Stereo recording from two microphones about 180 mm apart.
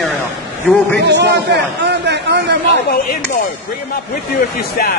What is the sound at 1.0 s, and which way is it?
Speech, 75° right (ahead or behind).